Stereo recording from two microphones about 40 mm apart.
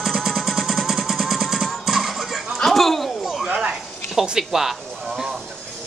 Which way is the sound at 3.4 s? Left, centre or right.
Centre.